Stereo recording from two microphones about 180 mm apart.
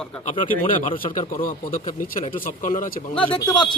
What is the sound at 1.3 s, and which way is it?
Speech, 50° left (ahead or behind).